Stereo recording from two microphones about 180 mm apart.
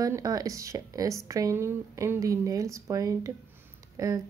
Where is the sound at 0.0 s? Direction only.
20° right (ahead or behind).